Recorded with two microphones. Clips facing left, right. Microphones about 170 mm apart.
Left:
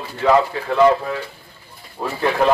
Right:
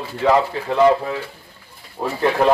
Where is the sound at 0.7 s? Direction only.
15° right (ahead or behind).